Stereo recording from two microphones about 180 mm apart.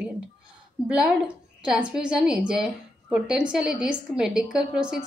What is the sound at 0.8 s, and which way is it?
A woman's voice, 5° right (ahead or behind).